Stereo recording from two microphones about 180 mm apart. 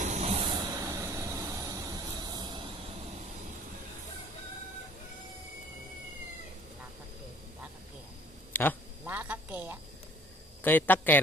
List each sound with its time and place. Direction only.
0.0 s vehicle: 35° right (ahead or behind)
0.7 s vehicle: 15° right (ahead or behind)
8.5 s quack: 10° left (ahead or behind)
9.0 s a sound: 10° right (ahead or behind)
10.6 s a man's voice: 10° left (ahead or behind)